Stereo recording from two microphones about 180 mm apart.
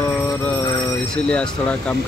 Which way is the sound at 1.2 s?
5° left (ahead or behind).